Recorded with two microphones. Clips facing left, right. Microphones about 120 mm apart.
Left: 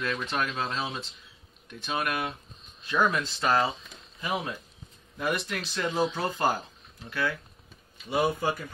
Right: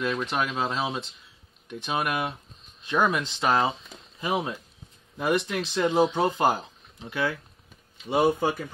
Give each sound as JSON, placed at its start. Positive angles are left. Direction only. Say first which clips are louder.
{"t": 0.0, "sound": "speech", "louder": "right 3 dB", "side_deg": -15}